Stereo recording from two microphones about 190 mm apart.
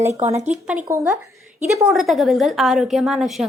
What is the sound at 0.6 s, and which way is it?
Speech, 10° right (ahead or behind).